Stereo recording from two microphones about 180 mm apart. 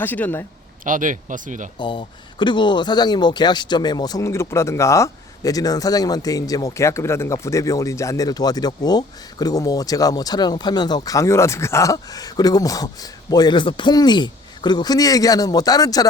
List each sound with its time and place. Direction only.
0.0 s speech: 10° left (ahead or behind)
0.9 s speech: 45° right (ahead or behind)
1.8 s speech: 25° left (ahead or behind)